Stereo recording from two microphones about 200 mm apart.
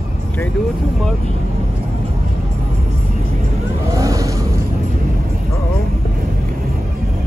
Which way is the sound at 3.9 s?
15° right (ahead or behind).